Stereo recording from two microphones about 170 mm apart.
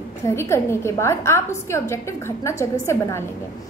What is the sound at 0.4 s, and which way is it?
A woman's voice, 15° left (ahead or behind).